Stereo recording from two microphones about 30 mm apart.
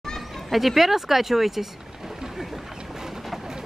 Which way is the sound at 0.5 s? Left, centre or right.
Centre.